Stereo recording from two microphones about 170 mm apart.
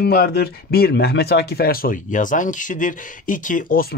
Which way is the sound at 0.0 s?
65° left (ahead or behind).